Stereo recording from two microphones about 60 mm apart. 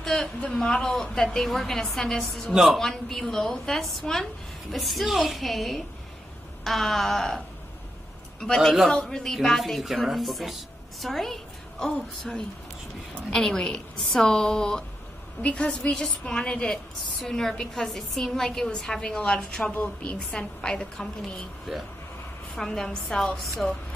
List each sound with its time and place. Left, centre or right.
0.0 s a woman's voice: centre
8.5 s a woman's voice: centre; by 15.9 s left
15.9 s a woman's voice: centre; by 20.2 s left
20.3 s a woman's voice: centre
22.6 s a woman's voice: centre